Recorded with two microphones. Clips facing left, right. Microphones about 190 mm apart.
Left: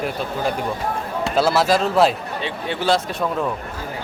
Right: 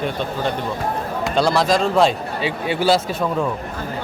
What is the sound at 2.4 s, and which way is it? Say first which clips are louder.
Speech: right 4 dB; 10° right (ahead or behind).